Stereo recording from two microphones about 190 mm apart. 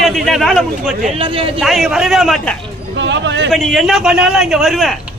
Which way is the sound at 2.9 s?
70° right (ahead or behind).